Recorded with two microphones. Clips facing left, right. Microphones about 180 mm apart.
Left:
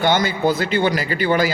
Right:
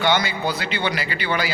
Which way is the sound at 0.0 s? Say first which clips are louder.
Left 4 dB; 45° left (ahead or behind).